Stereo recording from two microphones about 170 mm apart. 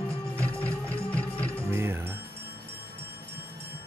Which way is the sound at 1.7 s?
15° right (ahead or behind).